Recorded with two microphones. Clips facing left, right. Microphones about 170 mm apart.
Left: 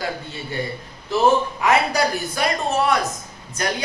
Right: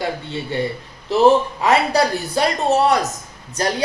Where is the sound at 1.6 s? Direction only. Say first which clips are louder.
Right 2 dB; 30° right (ahead or behind).